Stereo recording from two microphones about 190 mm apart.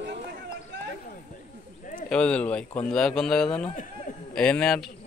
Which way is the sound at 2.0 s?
5° left (ahead or behind).